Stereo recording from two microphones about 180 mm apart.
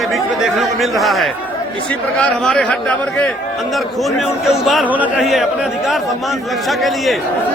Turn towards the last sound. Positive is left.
turn(degrees=0)  # may be behind; listen again after turning